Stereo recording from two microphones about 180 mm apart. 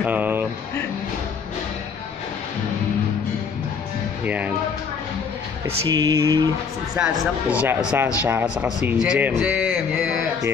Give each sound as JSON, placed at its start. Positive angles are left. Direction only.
{"t": 0.0, "sound": "a sound", "side_deg": -10}
{"t": 4.2, "sound": "music", "side_deg": -10}
{"t": 5.9, "sound": "mantra", "side_deg": -20}
{"t": 7.0, "sound": "speech", "side_deg": -10}